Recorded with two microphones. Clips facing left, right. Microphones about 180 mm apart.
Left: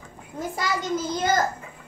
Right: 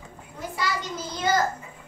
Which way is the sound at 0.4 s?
45° left (ahead or behind).